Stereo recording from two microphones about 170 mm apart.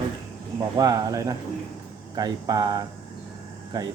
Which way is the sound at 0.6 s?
25° right (ahead or behind).